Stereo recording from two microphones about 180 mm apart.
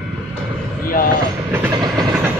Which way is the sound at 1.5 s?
15° right (ahead or behind).